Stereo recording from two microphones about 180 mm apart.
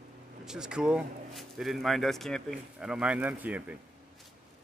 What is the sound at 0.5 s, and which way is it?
Speech, 5° right (ahead or behind).